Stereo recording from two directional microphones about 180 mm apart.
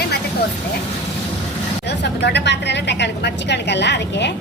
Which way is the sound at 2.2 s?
70° left (ahead or behind).